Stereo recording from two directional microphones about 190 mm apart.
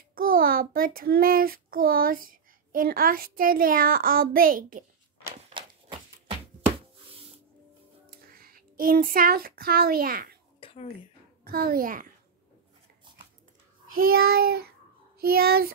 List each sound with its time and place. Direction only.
0.1 s a child's voice: 50° right (ahead or behind)
5.5 s a sound: 25° right (ahead or behind)
8.4 s a child's voice: 50° right (ahead or behind)
10.6 s a sound: 30° left (ahead or behind)
11.4 s child singing: 50° right (ahead or behind)
13.9 s child singing: 50° right (ahead or behind)